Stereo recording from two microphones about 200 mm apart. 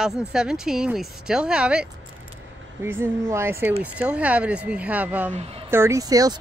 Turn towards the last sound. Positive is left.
turn(degrees=-20)  # may be behind; listen again after turning